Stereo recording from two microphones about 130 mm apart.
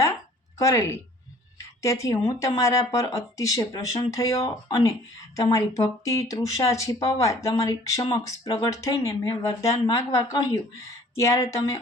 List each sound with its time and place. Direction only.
0.6 s speech: 25° left (ahead or behind)
1.5 s a sound: 25° left (ahead or behind)
2.4 s speech: 25° left (ahead or behind)